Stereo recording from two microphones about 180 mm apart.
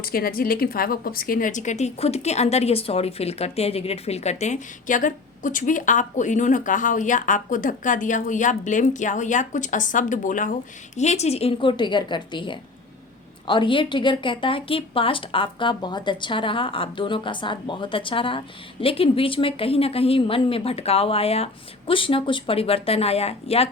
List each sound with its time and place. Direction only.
0.0 s a woman's voice: 55° left (ahead or behind); by 23.6 s 35° left (ahead or behind)